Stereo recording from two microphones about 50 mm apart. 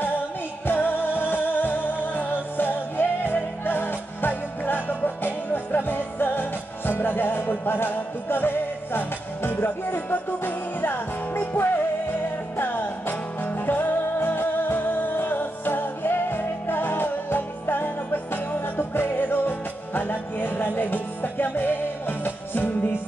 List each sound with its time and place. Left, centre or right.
0.7 s music: left